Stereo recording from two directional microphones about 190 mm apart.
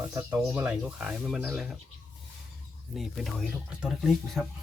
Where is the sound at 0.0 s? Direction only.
15° right (ahead or behind).